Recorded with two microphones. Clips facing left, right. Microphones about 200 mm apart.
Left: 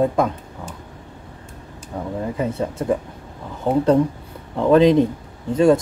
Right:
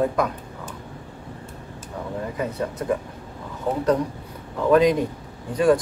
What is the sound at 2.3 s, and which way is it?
A man's voice, 25° left (ahead or behind).